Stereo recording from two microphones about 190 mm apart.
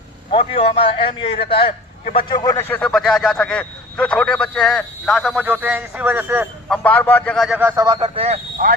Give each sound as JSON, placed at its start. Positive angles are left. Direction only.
{"t": 0.3, "sound": "speech", "side_deg": 30}
{"t": 6.7, "sound": "a man's voice", "side_deg": 10}
{"t": 7.6, "sound": "speech", "side_deg": -10}
{"t": 7.9, "sound": "speech", "side_deg": -25}
{"t": 8.6, "sound": "speech", "side_deg": -50}